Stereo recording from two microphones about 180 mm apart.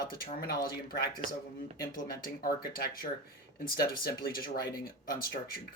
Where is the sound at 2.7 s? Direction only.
55° left (ahead or behind).